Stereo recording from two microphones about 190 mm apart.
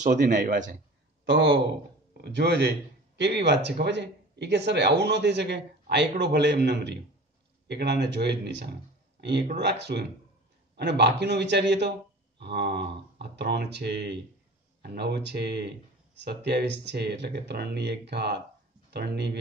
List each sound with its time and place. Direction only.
0.0 s a man's voice: 40° right (ahead or behind)
1.2 s speech: 70° right (ahead or behind)
2.2 s a man's voice: 60° right (ahead or behind)